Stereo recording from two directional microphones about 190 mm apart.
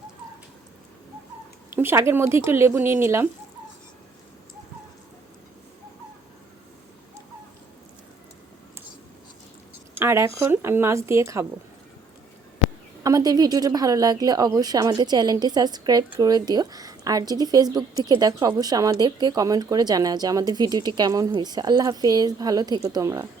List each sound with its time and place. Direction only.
1.7 s speech: 10° right (ahead or behind)
10.0 s speech: 15° right (ahead or behind)
13.0 s a woman's voice: 20° right (ahead or behind)